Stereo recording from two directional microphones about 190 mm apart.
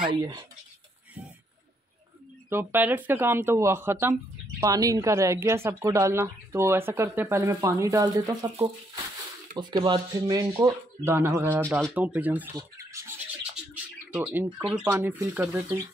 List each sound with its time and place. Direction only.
0.1 s speech: 20° right (ahead or behind)
2.5 s speech: 10° right (ahead or behind)
14.1 s speech: 10° right (ahead or behind)